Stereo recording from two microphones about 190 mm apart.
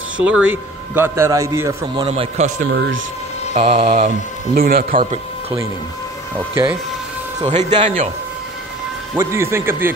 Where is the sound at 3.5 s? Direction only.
35° right (ahead or behind).